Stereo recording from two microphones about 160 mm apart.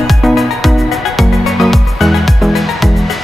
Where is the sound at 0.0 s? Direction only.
Centre (ahead or behind).